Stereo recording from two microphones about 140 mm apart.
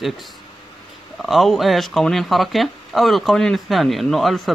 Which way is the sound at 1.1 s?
Centre (ahead or behind).